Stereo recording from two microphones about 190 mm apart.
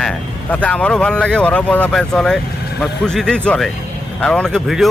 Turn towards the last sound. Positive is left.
turn(degrees=0)  # may be behind; listen again after turning